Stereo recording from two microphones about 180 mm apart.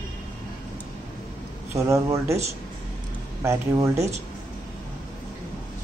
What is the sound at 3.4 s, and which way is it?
Speech, 15° right (ahead or behind).